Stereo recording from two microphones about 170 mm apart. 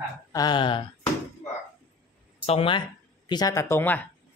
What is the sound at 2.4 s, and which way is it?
Speech, 35° left (ahead or behind).